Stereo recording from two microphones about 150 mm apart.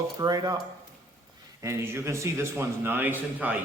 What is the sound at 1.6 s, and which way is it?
A man's voice, 20° right (ahead or behind).